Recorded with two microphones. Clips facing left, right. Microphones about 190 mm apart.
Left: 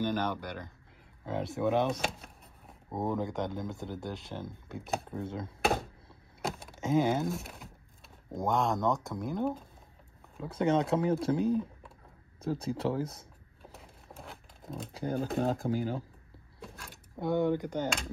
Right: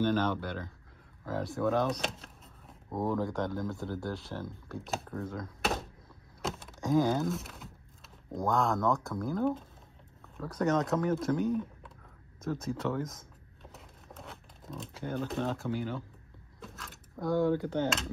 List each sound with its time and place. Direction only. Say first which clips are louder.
0.0 s speech: right 3 dB; 15° left (ahead or behind)
1.9 s speech: left 1 dB; centre (ahead or behind)
2.9 s speech: right 1 dB; 20° left (ahead or behind)
4.7 s speech: left 2 dB; centre (ahead or behind)
5.0 s speech: left 1 dB; 25° left (ahead or behind)
6.5 s a sound: even; centre (ahead or behind)
6.8 s speech: even; 20° left (ahead or behind)
7.3 s speech: even; centre (ahead or behind)
8.4 s speech: even; 20° left (ahead or behind)
9.4 s speech: right 2 dB; centre (ahead or behind)
10.3 s speech: left 1 dB; 25° left (ahead or behind)
13.6 s a sound: left 1 dB; centre (ahead or behind)
14.9 s speech: left 3 dB; 35° left (ahead or behind)
17.2 s speech: even; 20° left (ahead or behind)